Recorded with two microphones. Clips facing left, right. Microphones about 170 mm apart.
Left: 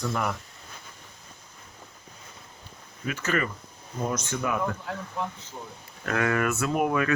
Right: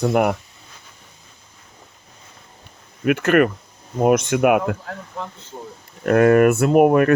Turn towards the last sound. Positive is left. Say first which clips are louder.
# right 11 dB
turn(degrees=-55)  # may be behind; listen again after turning